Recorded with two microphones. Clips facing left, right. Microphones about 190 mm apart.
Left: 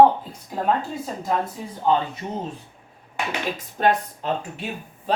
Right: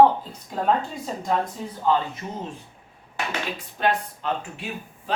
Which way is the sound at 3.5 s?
40° left (ahead or behind).